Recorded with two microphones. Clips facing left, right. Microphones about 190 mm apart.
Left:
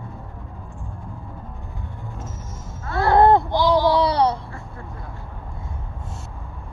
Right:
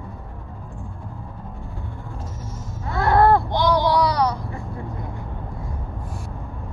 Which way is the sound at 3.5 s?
20° right (ahead or behind).